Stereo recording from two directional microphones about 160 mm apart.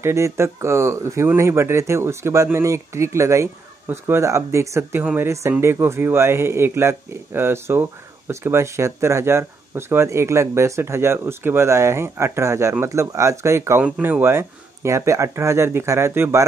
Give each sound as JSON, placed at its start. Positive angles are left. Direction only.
{"t": 0.0, "sound": "speech", "side_deg": -15}